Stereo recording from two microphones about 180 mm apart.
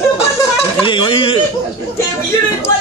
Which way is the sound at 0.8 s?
25° left (ahead or behind).